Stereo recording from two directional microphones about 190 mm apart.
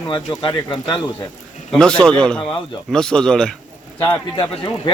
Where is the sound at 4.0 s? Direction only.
20° left (ahead or behind).